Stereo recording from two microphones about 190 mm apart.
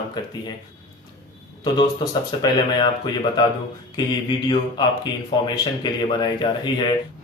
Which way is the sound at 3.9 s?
20° left (ahead or behind).